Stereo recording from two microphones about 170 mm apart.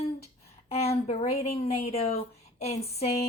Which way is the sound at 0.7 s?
35° left (ahead or behind).